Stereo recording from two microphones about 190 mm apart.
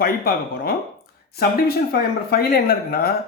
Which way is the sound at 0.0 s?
50° left (ahead or behind).